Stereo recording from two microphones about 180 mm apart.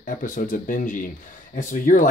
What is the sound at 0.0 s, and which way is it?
Speech, 50° left (ahead or behind).